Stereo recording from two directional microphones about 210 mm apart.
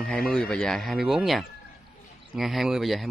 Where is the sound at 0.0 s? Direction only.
5° left (ahead or behind).